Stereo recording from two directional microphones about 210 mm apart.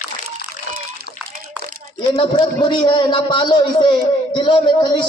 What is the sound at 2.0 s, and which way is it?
A man's voice, 20° left (ahead or behind).